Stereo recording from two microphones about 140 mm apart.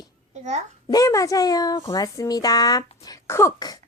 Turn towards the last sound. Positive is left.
turn(degrees=25)  # may be behind; listen again after turning